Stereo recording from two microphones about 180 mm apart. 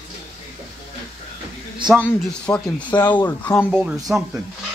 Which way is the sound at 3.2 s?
10° left (ahead or behind).